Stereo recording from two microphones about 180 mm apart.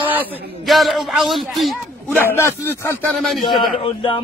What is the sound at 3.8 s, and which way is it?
Speech, 30° left (ahead or behind).